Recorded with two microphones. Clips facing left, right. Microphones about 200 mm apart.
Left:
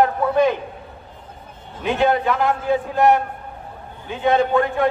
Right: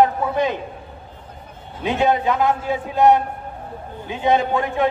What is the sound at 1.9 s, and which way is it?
A man's voice, 20° right (ahead or behind).